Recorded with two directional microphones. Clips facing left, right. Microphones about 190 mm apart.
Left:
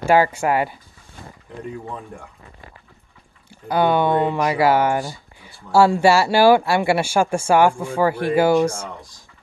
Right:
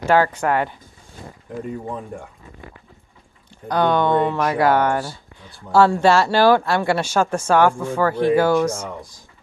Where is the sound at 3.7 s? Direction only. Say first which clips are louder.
Even; 10° left (ahead or behind).